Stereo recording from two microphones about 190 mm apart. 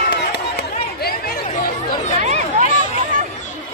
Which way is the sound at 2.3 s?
40° right (ahead or behind).